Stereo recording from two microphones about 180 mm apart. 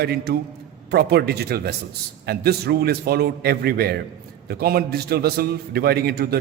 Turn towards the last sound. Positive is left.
turn(degrees=-60)  # may be behind; listen again after turning